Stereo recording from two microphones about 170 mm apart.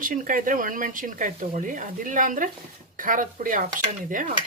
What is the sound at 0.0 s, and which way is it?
Speech, 50° right (ahead or behind).